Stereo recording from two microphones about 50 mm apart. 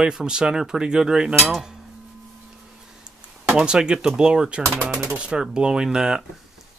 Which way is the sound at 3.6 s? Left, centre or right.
Centre.